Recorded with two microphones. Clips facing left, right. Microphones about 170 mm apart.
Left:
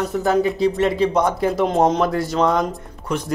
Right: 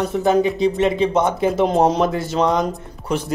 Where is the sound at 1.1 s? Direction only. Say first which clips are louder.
Right 1 dB; 25° right (ahead or behind).